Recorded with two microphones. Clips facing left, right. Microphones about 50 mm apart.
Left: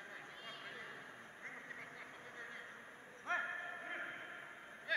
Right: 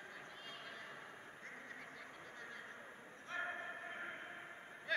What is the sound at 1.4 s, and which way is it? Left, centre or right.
Quack, centre.